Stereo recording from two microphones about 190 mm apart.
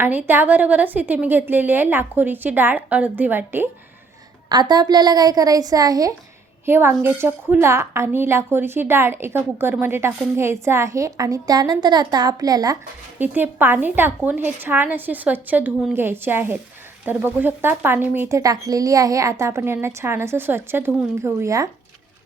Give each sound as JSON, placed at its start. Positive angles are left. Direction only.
{"t": 0.0, "sound": "a woman's voice", "side_deg": -10}
{"t": 4.4, "sound": "a woman's voice", "side_deg": -20}
{"t": 13.1, "sound": "a woman's voice", "side_deg": -10}